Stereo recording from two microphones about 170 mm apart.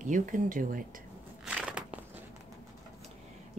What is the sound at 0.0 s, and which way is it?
Speech, 50° right (ahead or behind).